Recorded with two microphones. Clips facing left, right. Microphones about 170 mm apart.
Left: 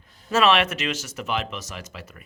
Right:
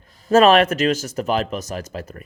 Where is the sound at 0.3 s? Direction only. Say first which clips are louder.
Right 7 dB; 40° right (ahead or behind).